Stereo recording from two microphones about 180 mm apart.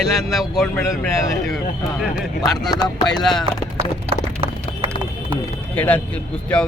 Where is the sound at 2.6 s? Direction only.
20° left (ahead or behind).